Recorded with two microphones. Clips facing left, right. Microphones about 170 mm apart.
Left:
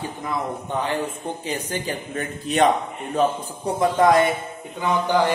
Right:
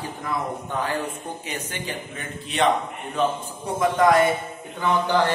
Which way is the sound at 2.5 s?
45° left (ahead or behind).